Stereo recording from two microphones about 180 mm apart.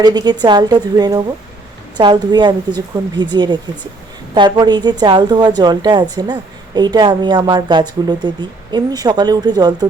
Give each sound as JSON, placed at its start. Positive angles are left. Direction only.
{"t": 0.0, "sound": "a woman's voice", "side_deg": -20}